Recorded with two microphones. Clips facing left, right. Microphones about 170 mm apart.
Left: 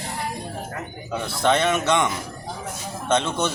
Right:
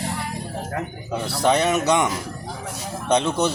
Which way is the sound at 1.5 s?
40° right (ahead or behind).